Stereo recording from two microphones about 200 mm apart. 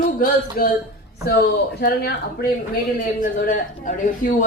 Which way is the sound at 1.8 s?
55° left (ahead or behind).